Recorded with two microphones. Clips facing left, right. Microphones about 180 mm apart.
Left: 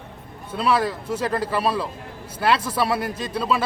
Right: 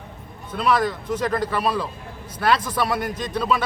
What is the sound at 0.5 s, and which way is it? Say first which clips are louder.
Speech: even; 30° left (ahead or behind).